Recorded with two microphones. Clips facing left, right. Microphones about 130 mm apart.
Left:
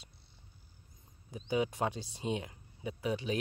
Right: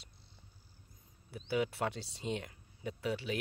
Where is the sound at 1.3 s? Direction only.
15° left (ahead or behind).